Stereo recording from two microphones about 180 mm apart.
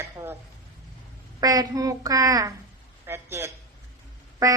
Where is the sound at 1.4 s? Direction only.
20° right (ahead or behind).